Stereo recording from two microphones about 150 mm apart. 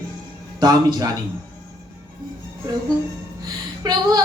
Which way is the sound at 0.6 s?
25° right (ahead or behind).